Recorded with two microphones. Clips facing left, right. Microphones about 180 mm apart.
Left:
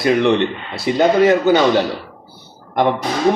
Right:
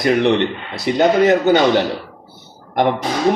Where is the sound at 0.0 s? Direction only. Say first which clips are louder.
Even; 20° right (ahead or behind).